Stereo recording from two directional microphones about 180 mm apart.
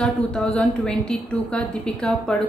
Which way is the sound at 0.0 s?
5° left (ahead or behind).